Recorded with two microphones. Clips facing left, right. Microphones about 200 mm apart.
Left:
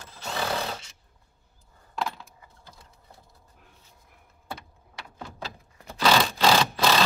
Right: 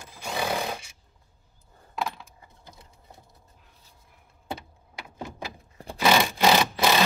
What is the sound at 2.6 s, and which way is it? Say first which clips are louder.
Vehicle: right 3 dB; 20° right (ahead or behind).